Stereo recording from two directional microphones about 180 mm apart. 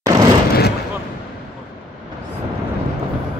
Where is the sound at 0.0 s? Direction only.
20° right (ahead or behind).